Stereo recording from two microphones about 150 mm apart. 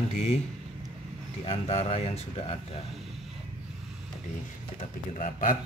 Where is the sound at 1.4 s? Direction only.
45° left (ahead or behind).